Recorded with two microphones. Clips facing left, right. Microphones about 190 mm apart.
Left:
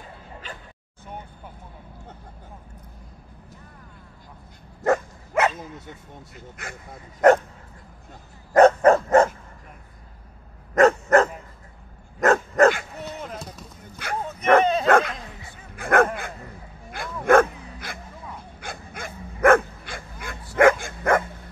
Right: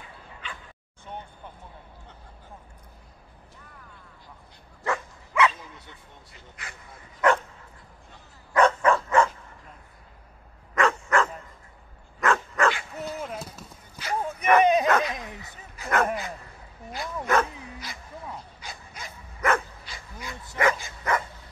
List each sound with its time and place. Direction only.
4.8 s speech: 45° left (ahead or behind)
8.1 s dog: 45° left (ahead or behind)
10.7 s dog: 45° left (ahead or behind)
13.0 s a sound: 5° right (ahead or behind)
14.6 s bow-wow: 15° right (ahead or behind)
14.9 s dog: 50° left (ahead or behind)
15.1 s bow-wow: 20° right (ahead or behind)
15.7 s dog: 55° left (ahead or behind)